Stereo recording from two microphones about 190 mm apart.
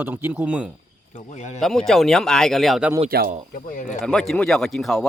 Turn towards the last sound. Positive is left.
turn(degrees=0)  # may be behind; listen again after turning